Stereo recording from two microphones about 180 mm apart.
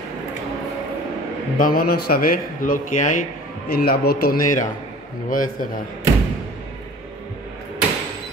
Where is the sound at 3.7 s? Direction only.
60° left (ahead or behind).